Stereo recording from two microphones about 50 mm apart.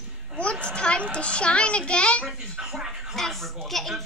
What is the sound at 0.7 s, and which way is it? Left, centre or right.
A child's voice, centre.